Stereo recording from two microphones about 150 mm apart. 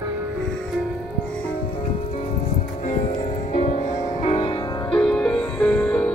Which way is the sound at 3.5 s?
50° left (ahead or behind).